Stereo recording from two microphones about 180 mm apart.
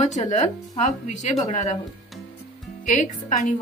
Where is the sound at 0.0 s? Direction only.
40° left (ahead or behind).